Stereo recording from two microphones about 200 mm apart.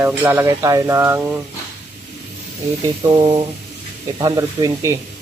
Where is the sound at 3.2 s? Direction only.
25° right (ahead or behind).